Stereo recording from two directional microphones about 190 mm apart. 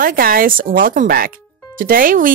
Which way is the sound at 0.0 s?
50° right (ahead or behind).